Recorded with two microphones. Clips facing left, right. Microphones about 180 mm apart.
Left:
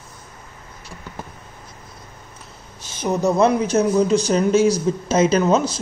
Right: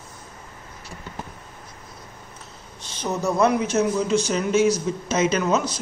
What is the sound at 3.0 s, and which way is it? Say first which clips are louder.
Speech: left 4 dB; 15° left (ahead or behind).